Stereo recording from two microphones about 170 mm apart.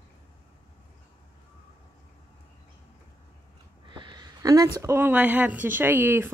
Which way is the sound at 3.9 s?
25° right (ahead or behind).